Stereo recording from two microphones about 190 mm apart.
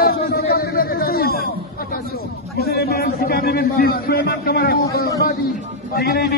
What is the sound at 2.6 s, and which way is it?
A man's voice, 55° left (ahead or behind).